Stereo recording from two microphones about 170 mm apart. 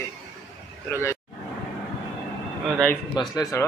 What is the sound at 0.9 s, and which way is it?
Speech, 15° left (ahead or behind).